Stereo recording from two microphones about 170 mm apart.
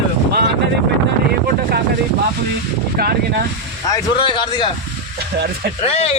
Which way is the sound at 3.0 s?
65° right (ahead or behind).